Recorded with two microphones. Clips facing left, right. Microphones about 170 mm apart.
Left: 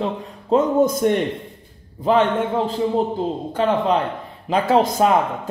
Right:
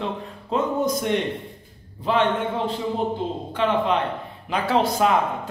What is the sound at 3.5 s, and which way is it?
A man's voice, 40° left (ahead or behind).